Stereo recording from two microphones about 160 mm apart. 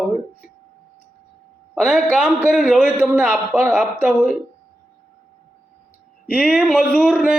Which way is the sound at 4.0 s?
10° right (ahead or behind).